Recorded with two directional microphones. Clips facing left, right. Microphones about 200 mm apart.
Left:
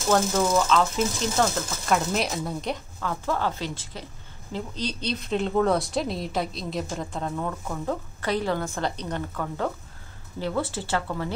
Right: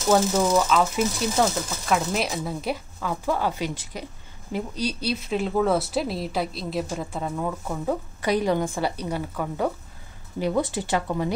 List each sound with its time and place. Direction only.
0.1 s speech: 10° right (ahead or behind)